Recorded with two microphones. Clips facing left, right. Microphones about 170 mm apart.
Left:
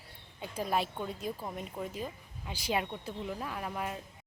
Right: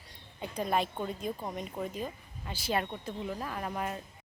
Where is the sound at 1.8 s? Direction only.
20° right (ahead or behind).